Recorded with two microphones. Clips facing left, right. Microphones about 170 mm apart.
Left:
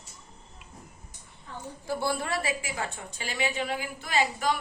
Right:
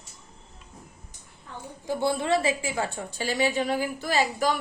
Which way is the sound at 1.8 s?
20° right (ahead or behind).